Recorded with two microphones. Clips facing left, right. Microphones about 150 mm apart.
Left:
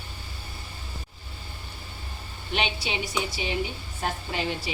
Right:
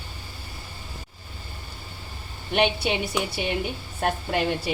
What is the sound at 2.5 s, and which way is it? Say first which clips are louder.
A woman's voice: right 7 dB; 55° right (ahead or behind).